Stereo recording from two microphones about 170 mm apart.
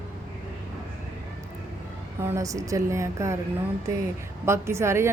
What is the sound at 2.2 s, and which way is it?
A woman's voice, 15° right (ahead or behind).